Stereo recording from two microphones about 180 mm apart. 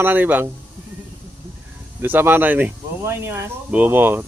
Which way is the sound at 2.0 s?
10° right (ahead or behind).